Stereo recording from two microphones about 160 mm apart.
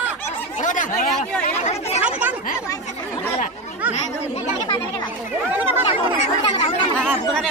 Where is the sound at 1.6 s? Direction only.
40° left (ahead or behind).